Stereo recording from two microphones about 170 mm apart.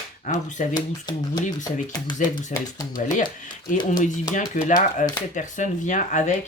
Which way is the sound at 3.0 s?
50° left (ahead or behind).